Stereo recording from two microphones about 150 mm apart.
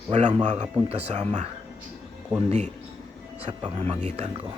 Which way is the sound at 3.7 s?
45° right (ahead or behind).